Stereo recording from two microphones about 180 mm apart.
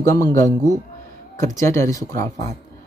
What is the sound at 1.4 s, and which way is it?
Speech, 15° left (ahead or behind).